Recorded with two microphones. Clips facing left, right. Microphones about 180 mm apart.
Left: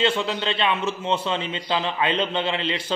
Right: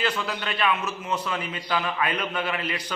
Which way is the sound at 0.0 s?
25° left (ahead or behind).